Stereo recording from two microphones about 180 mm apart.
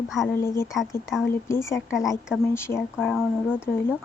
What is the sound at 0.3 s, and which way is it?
Speech, 15° left (ahead or behind).